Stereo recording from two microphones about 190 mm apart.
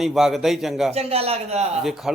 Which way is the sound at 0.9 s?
30° right (ahead or behind).